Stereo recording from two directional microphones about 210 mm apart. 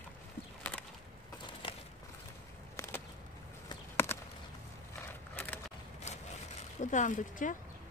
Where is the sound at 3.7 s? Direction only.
10° left (ahead or behind).